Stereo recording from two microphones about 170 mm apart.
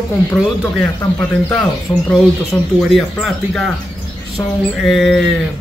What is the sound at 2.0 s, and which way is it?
Speech, 5° left (ahead or behind).